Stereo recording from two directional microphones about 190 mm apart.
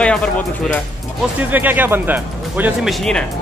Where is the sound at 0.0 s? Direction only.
5° left (ahead or behind).